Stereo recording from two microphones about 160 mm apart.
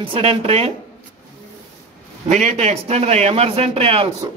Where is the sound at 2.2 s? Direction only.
50° right (ahead or behind).